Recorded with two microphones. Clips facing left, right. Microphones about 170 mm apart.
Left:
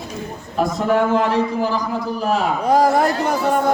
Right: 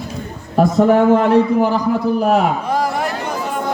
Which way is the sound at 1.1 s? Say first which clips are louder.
Right 6 dB; 55° right (ahead or behind).